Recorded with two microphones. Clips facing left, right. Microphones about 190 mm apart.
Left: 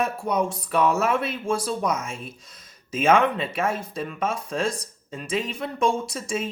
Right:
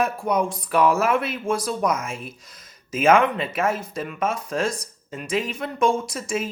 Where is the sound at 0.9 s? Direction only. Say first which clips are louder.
Right 2 dB; 55° right (ahead or behind).